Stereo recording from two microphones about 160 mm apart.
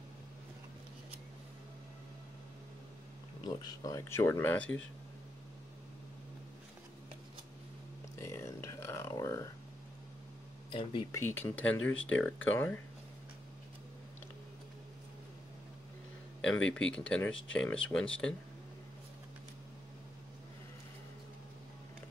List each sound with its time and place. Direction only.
3.4 s speech: 25° left (ahead or behind)
8.2 s a sound: 15° left (ahead or behind)
10.7 s speech: 30° left (ahead or behind)
11.1 s speech: 15° left (ahead or behind)
16.5 s speech: 5° left (ahead or behind)